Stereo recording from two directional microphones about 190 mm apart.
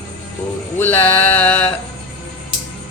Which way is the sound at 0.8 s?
10° left (ahead or behind).